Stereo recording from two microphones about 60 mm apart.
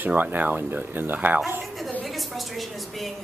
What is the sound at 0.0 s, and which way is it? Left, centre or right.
Speech, right.